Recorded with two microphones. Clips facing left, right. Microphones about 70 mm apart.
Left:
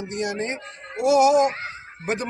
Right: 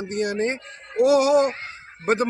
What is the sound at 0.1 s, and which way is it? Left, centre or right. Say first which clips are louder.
Speech: right 4 dB; right.